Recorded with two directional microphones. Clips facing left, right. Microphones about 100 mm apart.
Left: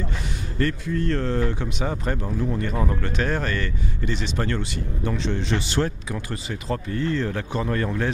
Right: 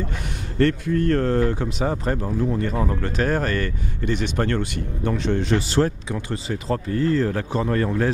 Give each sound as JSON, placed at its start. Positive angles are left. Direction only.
{"t": 0.6, "sound": "speech", "side_deg": -65}
{"t": 3.1, "sound": "speech", "side_deg": -40}